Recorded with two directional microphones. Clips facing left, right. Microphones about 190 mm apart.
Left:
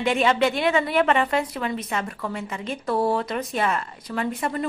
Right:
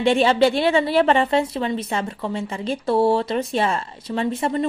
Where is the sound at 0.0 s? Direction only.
30° right (ahead or behind).